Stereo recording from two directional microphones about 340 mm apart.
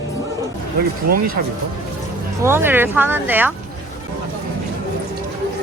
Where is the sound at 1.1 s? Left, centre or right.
Right.